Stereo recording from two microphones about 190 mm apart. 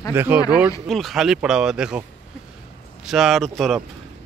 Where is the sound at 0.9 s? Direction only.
Centre (ahead or behind).